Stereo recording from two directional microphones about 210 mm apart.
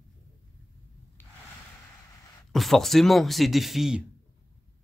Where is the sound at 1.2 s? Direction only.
10° left (ahead or behind).